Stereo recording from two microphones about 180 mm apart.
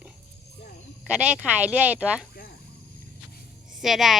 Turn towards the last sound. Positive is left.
turn(degrees=0)  # may be behind; listen again after turning